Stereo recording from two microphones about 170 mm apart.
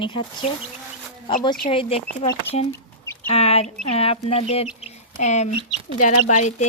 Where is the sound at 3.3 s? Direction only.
35° left (ahead or behind).